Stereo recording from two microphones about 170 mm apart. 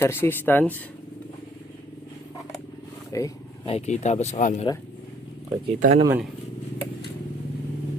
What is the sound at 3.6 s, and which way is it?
Speech, 40° left (ahead or behind).